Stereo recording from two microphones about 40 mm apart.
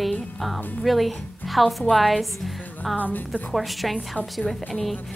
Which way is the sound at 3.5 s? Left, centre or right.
Centre.